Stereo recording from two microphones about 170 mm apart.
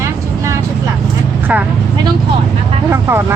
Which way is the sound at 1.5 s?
10° right (ahead or behind).